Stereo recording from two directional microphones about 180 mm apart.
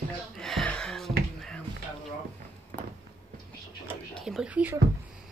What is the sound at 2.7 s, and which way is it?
Walk, 60° right (ahead or behind).